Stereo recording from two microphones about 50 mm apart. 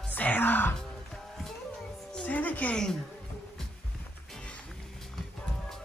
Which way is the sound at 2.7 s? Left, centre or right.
Centre.